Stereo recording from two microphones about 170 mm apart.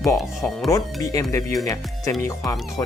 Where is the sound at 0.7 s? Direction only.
20° left (ahead or behind).